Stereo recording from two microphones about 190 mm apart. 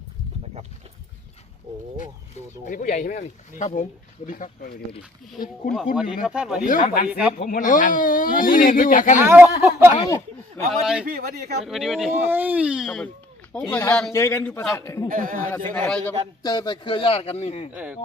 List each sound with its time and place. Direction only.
2.6 s speech: 45° left (ahead or behind)
5.7 s speech: 5° right (ahead or behind)
6.7 s speech: 40° left (ahead or behind)
9.1 s speech: 10° right (ahead or behind)
9.9 s a man's voice: 25° left (ahead or behind)
10.7 s speech: 5° right (ahead or behind)
11.0 s speech: 55° right (ahead or behind)
11.6 s a man's voice: centre (ahead or behind); by 15.1 s 15° left (ahead or behind)
15.1 s speech: 45° right (ahead or behind)
15.4 s a man's voice: 10° left (ahead or behind)
16.4 s a man's voice: 20° left (ahead or behind)